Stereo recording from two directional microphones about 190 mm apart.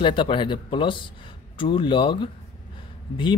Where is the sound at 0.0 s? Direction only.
25° left (ahead or behind).